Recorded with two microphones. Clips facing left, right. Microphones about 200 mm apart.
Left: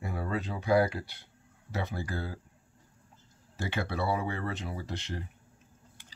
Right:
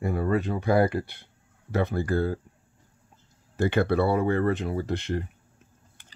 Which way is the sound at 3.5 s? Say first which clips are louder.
Right 11 dB; 55° right (ahead or behind).